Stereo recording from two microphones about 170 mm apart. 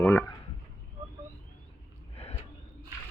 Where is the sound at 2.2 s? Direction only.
35° left (ahead or behind).